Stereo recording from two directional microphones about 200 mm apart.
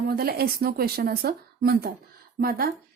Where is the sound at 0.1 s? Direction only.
50° right (ahead or behind).